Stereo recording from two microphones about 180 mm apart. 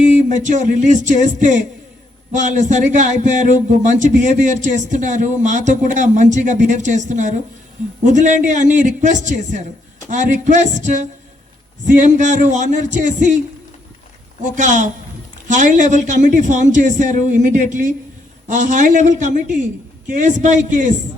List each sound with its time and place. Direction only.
0.0 s music: 45° right (ahead or behind)
2.4 s a man's voice: 45° right (ahead or behind)
14.4 s a man's voice: 45° right (ahead or behind)